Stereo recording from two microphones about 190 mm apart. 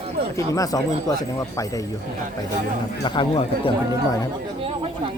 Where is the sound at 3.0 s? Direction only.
25° left (ahead or behind).